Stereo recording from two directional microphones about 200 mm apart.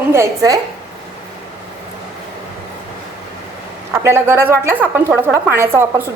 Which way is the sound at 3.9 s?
10° right (ahead or behind).